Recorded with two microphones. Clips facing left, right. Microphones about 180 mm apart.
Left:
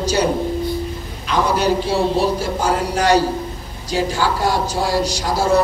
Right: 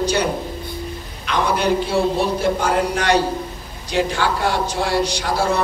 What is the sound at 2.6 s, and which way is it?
A man's voice, 35° left (ahead or behind).